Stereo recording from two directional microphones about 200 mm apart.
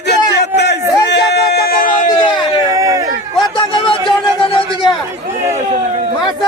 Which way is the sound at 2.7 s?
15° right (ahead or behind).